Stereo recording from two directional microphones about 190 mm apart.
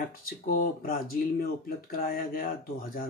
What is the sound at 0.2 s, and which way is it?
Speech, 50° left (ahead or behind).